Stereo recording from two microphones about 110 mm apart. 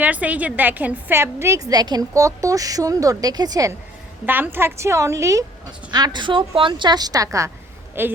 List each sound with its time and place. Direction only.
0.0 s a woman's voice: 15° right (ahead or behind); by 3.7 s 35° right (ahead or behind)
4.3 s a woman's voice: 20° right (ahead or behind)